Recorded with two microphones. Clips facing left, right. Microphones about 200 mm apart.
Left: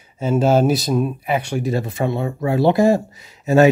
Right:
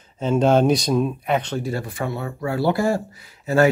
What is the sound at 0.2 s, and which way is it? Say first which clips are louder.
Speech: left 1 dB; 5° left (ahead or behind).